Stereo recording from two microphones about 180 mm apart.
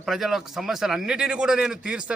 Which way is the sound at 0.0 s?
Centre (ahead or behind).